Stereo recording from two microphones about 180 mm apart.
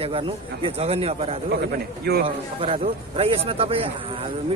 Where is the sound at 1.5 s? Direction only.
60° right (ahead or behind).